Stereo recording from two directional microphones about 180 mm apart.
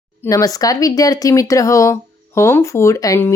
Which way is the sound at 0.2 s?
15° left (ahead or behind).